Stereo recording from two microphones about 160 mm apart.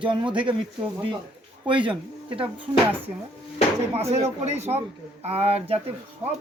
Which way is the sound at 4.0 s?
40° right (ahead or behind).